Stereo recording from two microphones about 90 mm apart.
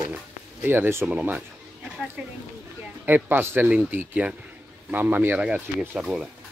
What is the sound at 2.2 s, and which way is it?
A man's voice, 15° right (ahead or behind).